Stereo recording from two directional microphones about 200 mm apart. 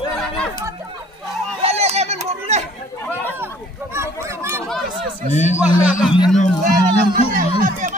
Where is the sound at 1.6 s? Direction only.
30° right (ahead or behind).